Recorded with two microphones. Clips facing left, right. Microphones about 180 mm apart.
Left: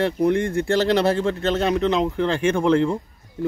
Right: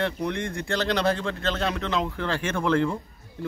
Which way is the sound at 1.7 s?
30° left (ahead or behind).